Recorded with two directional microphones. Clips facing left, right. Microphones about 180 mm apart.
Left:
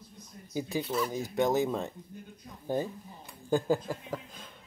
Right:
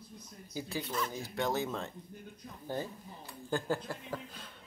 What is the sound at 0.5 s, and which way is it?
Speech, 15° left (ahead or behind).